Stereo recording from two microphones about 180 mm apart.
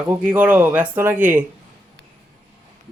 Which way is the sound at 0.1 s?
10° right (ahead or behind).